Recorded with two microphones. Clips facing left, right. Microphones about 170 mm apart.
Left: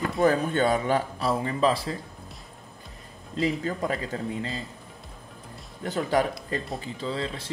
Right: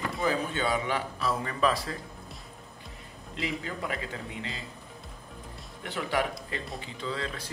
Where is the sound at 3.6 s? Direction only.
40° left (ahead or behind).